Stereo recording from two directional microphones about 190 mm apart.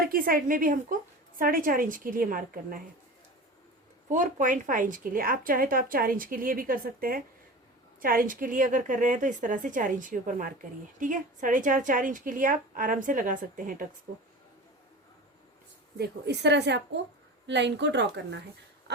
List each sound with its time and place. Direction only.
0.0 s a woman's voice: 50° right (ahead or behind)
4.1 s a woman's voice: 40° right (ahead or behind)
16.0 s a woman's voice: 60° right (ahead or behind)